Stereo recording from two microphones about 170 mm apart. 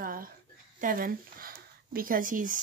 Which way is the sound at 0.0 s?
55° right (ahead or behind).